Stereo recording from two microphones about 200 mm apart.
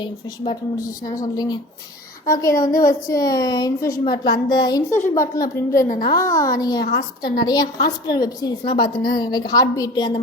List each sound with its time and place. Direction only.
0.0 s a woman's voice: 20° left (ahead or behind)